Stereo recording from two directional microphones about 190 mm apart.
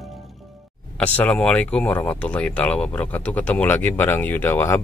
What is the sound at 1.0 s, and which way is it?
Speech, 5° left (ahead or behind).